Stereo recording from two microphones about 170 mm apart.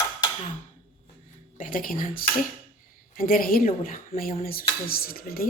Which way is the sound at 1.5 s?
50° left (ahead or behind).